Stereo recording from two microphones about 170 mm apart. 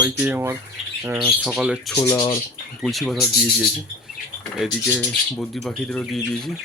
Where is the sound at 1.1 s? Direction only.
Centre (ahead or behind).